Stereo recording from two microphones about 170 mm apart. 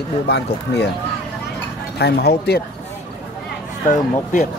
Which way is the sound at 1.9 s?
70° left (ahead or behind).